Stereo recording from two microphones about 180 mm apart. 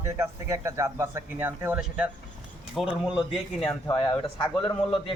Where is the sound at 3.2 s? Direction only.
30° left (ahead or behind).